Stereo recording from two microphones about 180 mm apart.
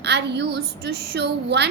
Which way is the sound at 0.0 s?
70° right (ahead or behind).